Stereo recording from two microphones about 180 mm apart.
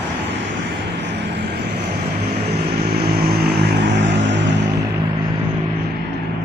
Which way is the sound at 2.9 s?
60° right (ahead or behind).